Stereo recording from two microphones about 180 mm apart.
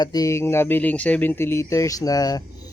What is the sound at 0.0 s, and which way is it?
Speech, 20° left (ahead or behind).